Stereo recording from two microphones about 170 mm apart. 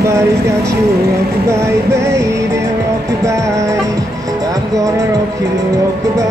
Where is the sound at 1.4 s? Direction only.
15° right (ahead or behind).